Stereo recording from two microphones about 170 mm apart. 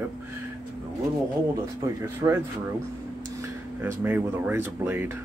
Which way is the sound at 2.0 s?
15° right (ahead or behind).